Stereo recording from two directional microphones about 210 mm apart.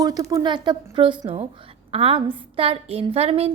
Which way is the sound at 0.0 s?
15° right (ahead or behind).